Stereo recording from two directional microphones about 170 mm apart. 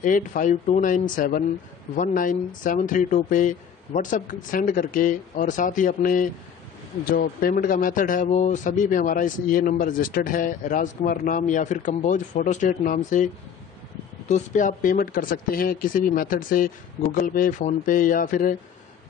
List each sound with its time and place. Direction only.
0.0 s a man's voice: 50° left (ahead or behind)
14.3 s a man's voice: 50° left (ahead or behind)